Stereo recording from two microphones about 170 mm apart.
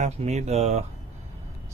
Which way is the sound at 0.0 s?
40° right (ahead or behind).